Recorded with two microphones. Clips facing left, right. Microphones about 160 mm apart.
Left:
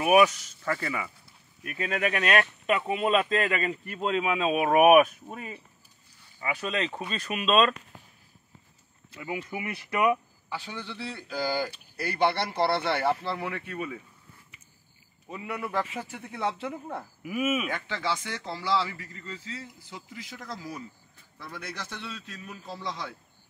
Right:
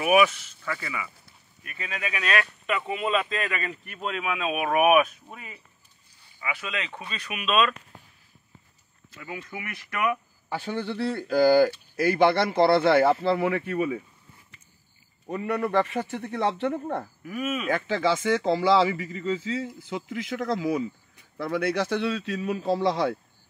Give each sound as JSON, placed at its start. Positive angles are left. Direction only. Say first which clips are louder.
{"t": 0.3, "sound": "speech", "louder": "left 3 dB", "side_deg": 40}
{"t": 9.5, "sound": "speech", "louder": "left 3 dB", "side_deg": 20}
{"t": 10.5, "sound": "speech", "louder": "right 8 dB", "side_deg": -50}
{"t": 13.2, "sound": "a man's voice", "louder": "right 9 dB", "side_deg": -70}
{"t": 15.4, "sound": "a man's voice", "louder": "right 8 dB", "side_deg": -40}
{"t": 15.7, "sound": "a man's voice", "louder": "right 7 dB", "side_deg": -75}
{"t": 17.2, "sound": "speech", "louder": "left 2 dB", "side_deg": 5}
{"t": 18.1, "sound": "a man's voice", "louder": "right 11 dB", "side_deg": -90}
{"t": 18.6, "sound": "a man's voice", "louder": "right 8 dB", "side_deg": -75}